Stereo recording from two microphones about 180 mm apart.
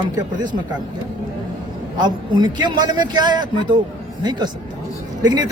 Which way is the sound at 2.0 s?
25° right (ahead or behind).